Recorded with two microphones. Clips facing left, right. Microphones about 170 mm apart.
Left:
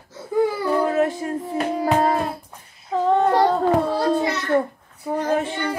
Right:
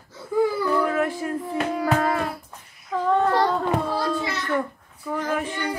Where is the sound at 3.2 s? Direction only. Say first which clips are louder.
Left 4 dB; 35° left (ahead or behind).